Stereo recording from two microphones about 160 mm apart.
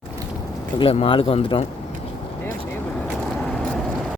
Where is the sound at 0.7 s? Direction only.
35° left (ahead or behind).